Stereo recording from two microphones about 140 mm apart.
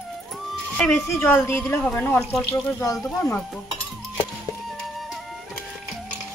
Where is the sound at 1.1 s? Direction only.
15° left (ahead or behind).